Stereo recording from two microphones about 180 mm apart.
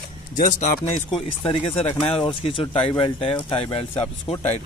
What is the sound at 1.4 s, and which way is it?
Speech, 30° left (ahead or behind).